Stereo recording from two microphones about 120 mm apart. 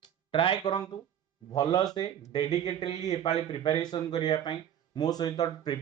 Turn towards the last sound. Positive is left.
turn(degrees=35)  # may be behind; listen again after turning